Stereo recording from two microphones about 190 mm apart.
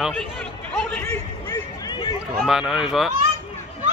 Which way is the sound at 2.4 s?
Centre (ahead or behind).